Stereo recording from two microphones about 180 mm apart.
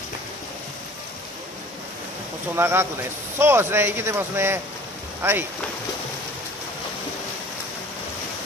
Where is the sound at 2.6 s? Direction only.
15° right (ahead or behind).